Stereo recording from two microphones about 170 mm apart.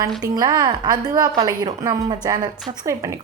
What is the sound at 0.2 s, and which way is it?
A woman's voice, 25° right (ahead or behind).